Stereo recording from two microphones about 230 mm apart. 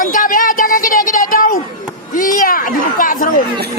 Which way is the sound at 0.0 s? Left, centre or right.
Left.